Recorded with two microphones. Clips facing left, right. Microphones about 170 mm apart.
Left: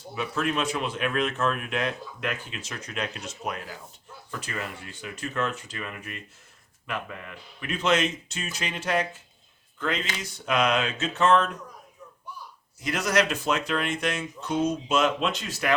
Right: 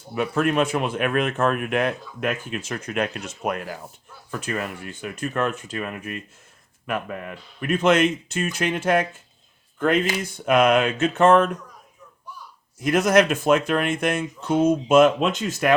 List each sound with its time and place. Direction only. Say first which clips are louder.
0.1 s speech: right 6 dB; 55° right (ahead or behind)
12.8 s speech: right 7 dB; 50° right (ahead or behind)